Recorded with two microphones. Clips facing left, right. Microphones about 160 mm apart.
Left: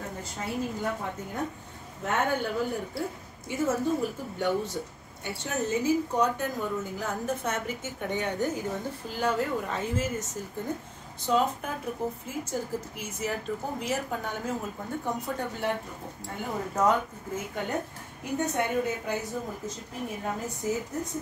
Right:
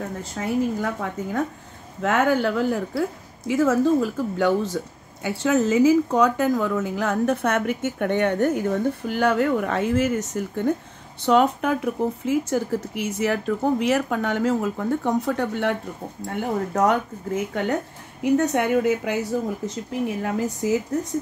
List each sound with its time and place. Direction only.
0.2 s a woman's voice: 90° right
2.0 s a woman's voice: 85° right
19.6 s speech: 75° right (ahead or behind)